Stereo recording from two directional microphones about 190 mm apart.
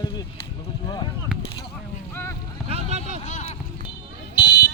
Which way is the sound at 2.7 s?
35° right (ahead or behind).